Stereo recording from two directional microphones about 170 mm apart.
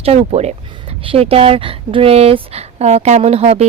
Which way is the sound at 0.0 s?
35° right (ahead or behind).